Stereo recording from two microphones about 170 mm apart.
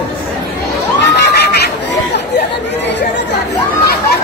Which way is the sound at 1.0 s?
80° left.